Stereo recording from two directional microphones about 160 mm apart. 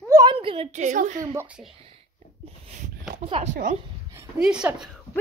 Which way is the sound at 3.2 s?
40° right (ahead or behind).